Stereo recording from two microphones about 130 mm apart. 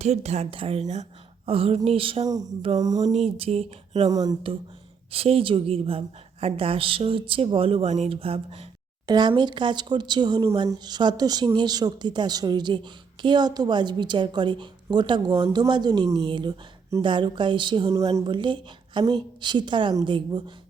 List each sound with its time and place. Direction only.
0.0 s a woman's voice: 55° right (ahead or behind)
2.2 s a sound: 30° right (ahead or behind)
2.7 s speech: 30° right (ahead or behind)
3.3 s a woman's voice: 50° right (ahead or behind)
4.1 s a sound: 30° right (ahead or behind)
5.1 s a woman's voice: 45° right (ahead or behind)
9.0 s speech: 35° right (ahead or behind)
17.9 s speech: 25° right (ahead or behind)